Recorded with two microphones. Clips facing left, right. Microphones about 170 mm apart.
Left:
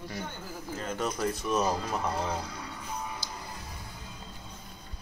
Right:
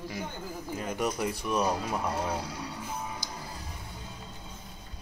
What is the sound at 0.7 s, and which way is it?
Speech, 15° right (ahead or behind).